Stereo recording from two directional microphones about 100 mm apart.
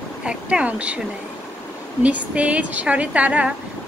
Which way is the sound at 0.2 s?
10° right (ahead or behind).